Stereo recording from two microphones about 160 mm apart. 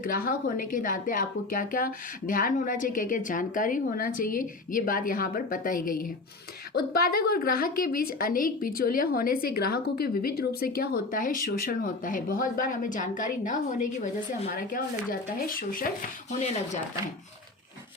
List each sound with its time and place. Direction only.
0.0 s a woman's voice: 60° left (ahead or behind)
6.7 s a woman's voice: 70° left (ahead or behind)